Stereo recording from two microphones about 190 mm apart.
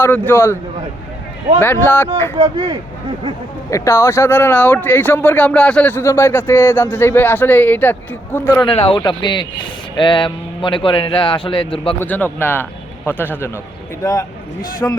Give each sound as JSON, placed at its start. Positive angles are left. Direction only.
{"t": 0.0, "sound": "speech", "side_deg": 10}
{"t": 2.3, "sound": "speech", "side_deg": -30}
{"t": 3.7, "sound": "speech", "side_deg": 15}
{"t": 8.6, "sound": "a man's voice", "side_deg": 25}
{"t": 11.9, "sound": "a man's voice", "side_deg": 10}
{"t": 14.8, "sound": "speech", "side_deg": 10}